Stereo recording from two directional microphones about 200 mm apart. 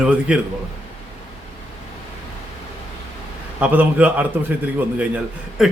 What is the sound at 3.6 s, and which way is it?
A man's voice, 10° right (ahead or behind).